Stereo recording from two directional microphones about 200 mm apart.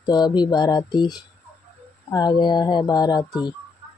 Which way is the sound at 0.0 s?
20° left (ahead or behind).